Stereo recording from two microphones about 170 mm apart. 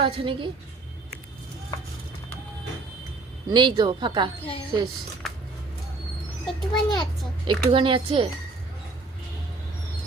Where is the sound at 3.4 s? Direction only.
25° right (ahead or behind).